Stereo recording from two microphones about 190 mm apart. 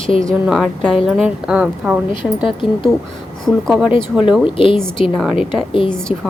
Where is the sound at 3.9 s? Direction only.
25° left (ahead or behind).